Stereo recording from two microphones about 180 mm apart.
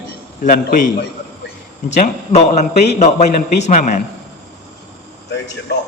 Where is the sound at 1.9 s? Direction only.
40° left (ahead or behind).